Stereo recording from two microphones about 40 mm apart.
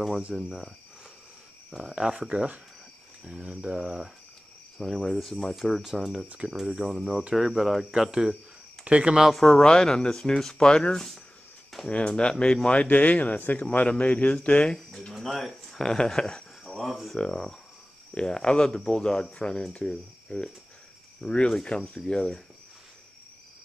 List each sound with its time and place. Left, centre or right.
0.3 s speech: centre
1.7 s speech: centre
2.0 s speech: right
4.8 s speech: centre
7.9 s speech: centre
8.8 s speech: right
9.3 s speech: centre
9.6 s speech: centre
11.9 s speech: left
15.2 s speech: centre
16.6 s speech: centre
17.2 s speech: centre